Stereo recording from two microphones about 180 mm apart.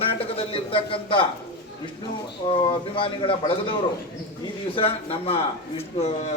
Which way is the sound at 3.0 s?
30° left (ahead or behind).